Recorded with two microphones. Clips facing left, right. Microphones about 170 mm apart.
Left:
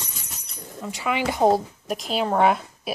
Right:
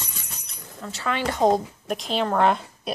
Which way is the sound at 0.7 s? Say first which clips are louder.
Left 2 dB; 10° left (ahead or behind).